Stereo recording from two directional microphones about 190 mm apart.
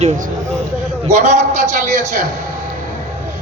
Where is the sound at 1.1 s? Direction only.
40° right (ahead or behind).